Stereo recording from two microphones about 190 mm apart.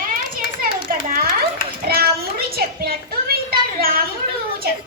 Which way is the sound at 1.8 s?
55° right (ahead or behind).